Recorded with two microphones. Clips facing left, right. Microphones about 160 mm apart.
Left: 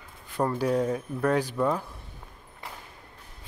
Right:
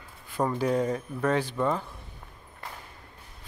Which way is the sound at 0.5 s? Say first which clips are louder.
Left 1 dB; 5° left (ahead or behind).